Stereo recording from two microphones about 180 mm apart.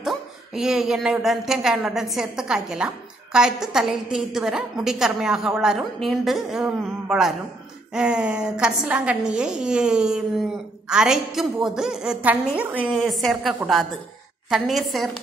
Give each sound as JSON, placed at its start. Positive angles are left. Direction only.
{"t": 0.0, "sound": "a woman's voice", "side_deg": 0}